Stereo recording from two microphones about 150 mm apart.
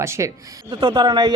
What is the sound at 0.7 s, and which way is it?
Speech, 35° right (ahead or behind).